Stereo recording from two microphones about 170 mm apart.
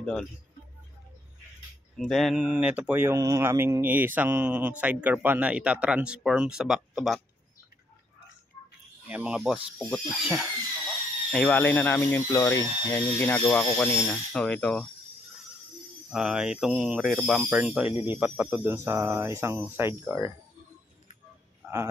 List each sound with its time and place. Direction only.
0.0 s speech: centre (ahead or behind)
2.0 s speech: centre (ahead or behind)
9.1 s speech: 5° right (ahead or behind)
11.3 s speech: 10° left (ahead or behind)
16.1 s speech: 5° right (ahead or behind)
21.6 s a sound: 15° right (ahead or behind)